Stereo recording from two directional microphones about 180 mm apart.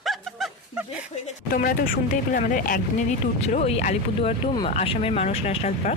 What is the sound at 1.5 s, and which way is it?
Speech, 55° left (ahead or behind).